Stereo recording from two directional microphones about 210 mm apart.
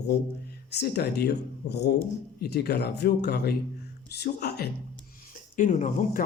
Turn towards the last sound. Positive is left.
turn(degrees=40)  # may be behind; listen again after turning